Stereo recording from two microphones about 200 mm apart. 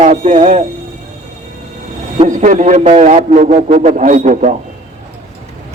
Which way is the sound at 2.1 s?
40° right (ahead or behind).